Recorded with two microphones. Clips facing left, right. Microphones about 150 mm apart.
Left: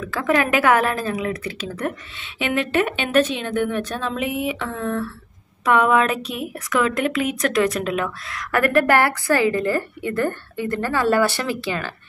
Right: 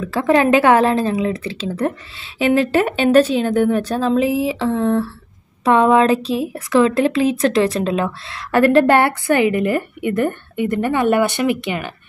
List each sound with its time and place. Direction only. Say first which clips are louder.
0.0 s a woman's voice: right 5 dB; 30° right (ahead or behind)